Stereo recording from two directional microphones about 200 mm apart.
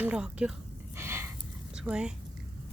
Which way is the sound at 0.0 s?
5° right (ahead or behind).